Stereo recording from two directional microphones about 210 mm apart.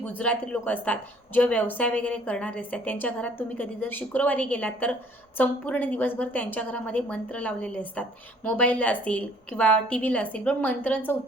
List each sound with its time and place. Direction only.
0.2 s a woman's voice: 5° left (ahead or behind)